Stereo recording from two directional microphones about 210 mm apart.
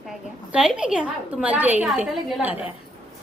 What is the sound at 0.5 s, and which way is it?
A woman's voice, 5° right (ahead or behind).